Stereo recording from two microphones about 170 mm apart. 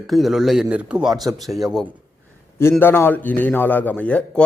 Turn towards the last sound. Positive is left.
turn(degrees=5)  # may be behind; listen again after turning